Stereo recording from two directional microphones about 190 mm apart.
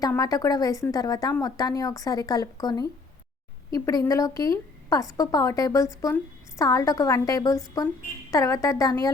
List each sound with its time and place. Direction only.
0.0 s a woman's voice: 20° left (ahead or behind)